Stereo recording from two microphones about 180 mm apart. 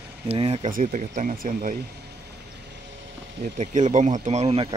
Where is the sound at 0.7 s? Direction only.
50° right (ahead or behind).